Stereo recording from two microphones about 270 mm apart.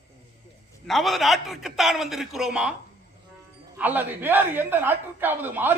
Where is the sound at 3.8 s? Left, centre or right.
Centre.